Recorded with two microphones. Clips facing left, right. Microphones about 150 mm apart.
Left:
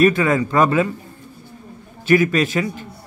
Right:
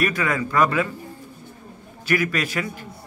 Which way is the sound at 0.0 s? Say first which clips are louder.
Left 8 dB; 25° left (ahead or behind).